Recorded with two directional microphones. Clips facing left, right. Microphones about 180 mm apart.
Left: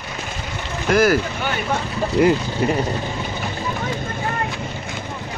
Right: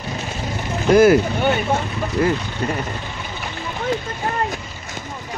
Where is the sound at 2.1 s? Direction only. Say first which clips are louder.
Left 4 dB; 20° left (ahead or behind).